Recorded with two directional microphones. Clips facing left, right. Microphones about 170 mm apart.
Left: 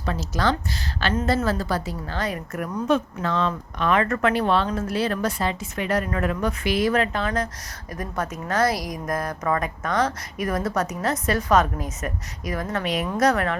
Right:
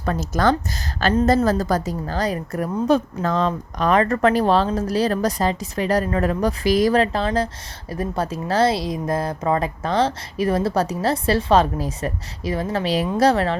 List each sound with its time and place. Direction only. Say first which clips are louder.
0.0 s a woman's voice: right 5 dB; 50° right (ahead or behind); by 13.6 s 30° right (ahead or behind)